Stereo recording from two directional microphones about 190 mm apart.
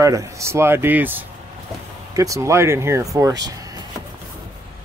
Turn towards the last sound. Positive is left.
turn(degrees=-20)  # may be behind; listen again after turning